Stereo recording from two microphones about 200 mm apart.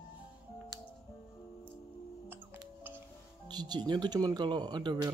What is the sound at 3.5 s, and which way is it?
Speech, 20° right (ahead or behind).